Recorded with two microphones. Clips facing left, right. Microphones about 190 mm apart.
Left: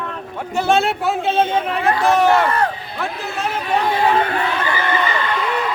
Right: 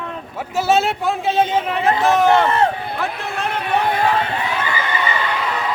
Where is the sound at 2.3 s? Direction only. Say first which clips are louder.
Right 1 dB; 25° right (ahead or behind).